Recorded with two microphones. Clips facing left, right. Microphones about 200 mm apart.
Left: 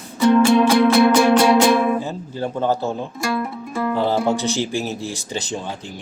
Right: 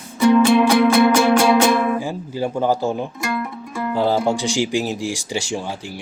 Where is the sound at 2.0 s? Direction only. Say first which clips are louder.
Right 2 dB; 10° right (ahead or behind).